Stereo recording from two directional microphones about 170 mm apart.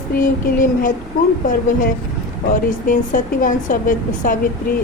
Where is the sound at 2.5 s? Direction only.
50° left (ahead or behind).